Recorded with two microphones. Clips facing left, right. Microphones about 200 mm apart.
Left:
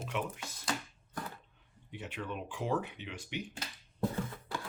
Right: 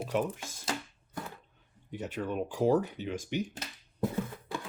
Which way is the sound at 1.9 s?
40° right (ahead or behind).